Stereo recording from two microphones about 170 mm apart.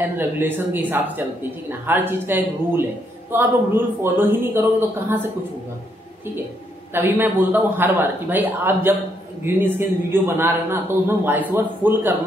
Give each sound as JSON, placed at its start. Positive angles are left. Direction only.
{"t": 0.0, "sound": "a man's voice", "side_deg": -10}
{"t": 6.9, "sound": "a man's voice", "side_deg": -10}